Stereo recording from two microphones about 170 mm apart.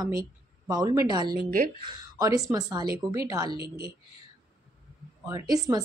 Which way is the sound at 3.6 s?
60° right (ahead or behind).